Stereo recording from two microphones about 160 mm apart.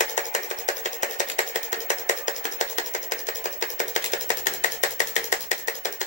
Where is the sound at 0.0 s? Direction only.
50° left (ahead or behind).